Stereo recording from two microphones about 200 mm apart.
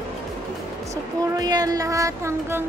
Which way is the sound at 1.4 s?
20° right (ahead or behind).